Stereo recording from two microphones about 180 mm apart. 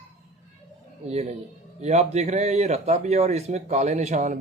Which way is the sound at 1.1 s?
35° right (ahead or behind).